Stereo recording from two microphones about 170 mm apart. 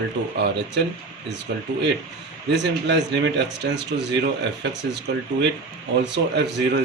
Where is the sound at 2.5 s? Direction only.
90° right.